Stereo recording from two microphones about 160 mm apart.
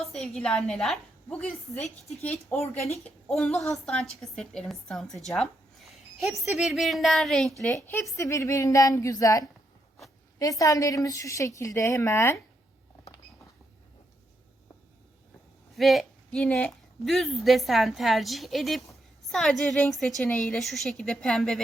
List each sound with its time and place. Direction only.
0.0 s a woman's voice: centre (ahead or behind)
8.1 s a woman's voice: 20° left (ahead or behind)
15.7 s speech: centre (ahead or behind)